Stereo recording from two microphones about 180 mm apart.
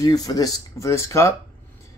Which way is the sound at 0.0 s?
20° left (ahead or behind).